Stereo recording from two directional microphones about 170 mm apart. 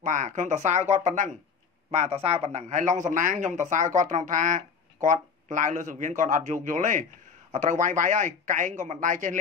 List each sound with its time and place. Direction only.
0.0 s speech: 50° right (ahead or behind)